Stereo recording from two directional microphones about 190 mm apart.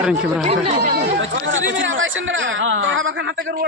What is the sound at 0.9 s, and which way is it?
Speech, 65° right (ahead or behind).